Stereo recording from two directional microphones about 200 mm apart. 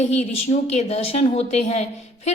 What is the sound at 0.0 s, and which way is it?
A woman's voice, 35° left (ahead or behind).